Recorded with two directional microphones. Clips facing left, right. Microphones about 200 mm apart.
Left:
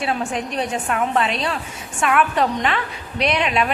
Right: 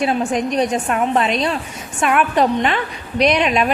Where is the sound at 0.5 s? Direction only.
35° right (ahead or behind).